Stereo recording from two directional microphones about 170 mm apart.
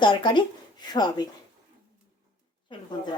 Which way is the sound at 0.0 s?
30° left (ahead or behind).